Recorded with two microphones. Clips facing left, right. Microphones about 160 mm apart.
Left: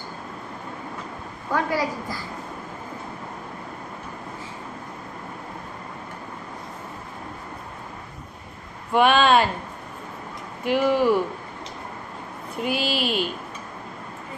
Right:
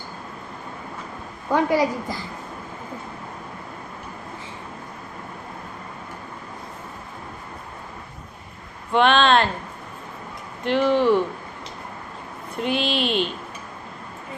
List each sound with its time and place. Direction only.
1.5 s a woman's voice: 20° right (ahead or behind)
8.9 s speech: 10° left (ahead or behind)
10.6 s speech: 10° left (ahead or behind)
12.5 s speech: 5° left (ahead or behind)